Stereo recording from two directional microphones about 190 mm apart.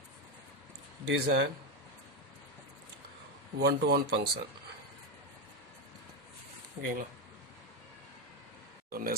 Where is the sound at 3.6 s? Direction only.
60° right (ahead or behind).